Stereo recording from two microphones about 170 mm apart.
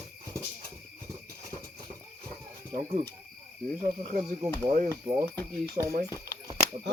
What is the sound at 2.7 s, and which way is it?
Speech, 45° right (ahead or behind).